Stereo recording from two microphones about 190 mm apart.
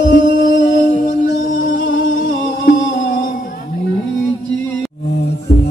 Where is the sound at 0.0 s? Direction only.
45° left (ahead or behind).